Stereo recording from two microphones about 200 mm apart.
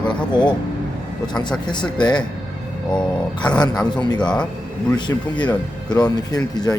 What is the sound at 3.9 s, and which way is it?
Speech, 20° left (ahead or behind).